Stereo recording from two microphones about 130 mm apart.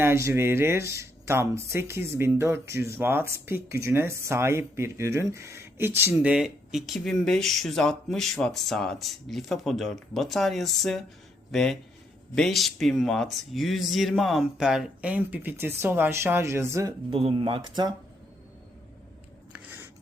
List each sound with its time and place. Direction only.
0.0 s speech: 20° right (ahead or behind)
17.1 s speech: 45° right (ahead or behind)